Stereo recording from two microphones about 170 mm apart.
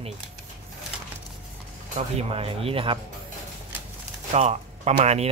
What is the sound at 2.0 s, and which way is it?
Speech, 35° right (ahead or behind).